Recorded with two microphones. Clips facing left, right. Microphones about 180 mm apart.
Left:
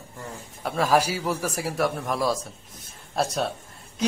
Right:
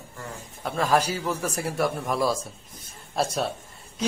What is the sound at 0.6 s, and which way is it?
A man's voice, 5° left (ahead or behind).